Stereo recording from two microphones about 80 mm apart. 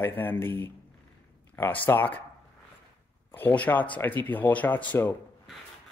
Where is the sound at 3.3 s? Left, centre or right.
Left.